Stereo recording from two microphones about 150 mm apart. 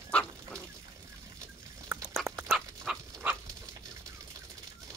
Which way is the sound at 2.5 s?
5° right (ahead or behind).